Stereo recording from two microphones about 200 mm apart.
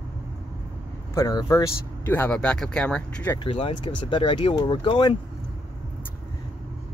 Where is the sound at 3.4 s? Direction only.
25° left (ahead or behind).